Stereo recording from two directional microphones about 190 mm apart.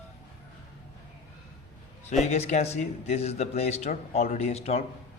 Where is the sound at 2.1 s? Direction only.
35° left (ahead or behind).